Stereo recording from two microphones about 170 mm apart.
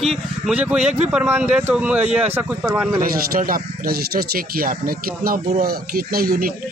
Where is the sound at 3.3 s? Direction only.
55° right (ahead or behind).